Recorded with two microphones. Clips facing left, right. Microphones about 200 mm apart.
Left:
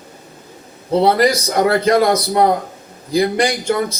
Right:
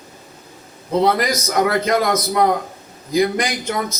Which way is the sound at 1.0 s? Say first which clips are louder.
Left 4 dB; 30° left (ahead or behind).